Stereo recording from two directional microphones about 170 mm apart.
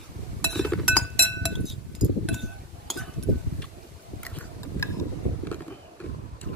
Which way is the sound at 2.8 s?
Centre (ahead or behind).